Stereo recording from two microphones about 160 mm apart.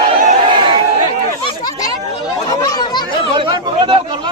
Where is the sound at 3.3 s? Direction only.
30° right (ahead or behind).